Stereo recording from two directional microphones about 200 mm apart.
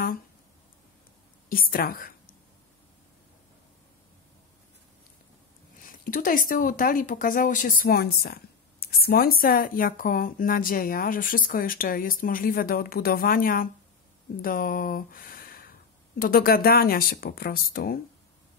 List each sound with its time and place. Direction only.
1.5 s speech: 45° left (ahead or behind)
5.8 s speech: 45° left (ahead or behind)